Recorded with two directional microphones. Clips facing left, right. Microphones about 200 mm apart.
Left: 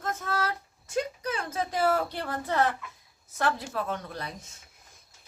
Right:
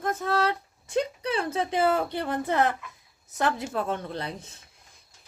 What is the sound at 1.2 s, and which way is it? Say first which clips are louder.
Speech: right 4 dB; 30° right (ahead or behind).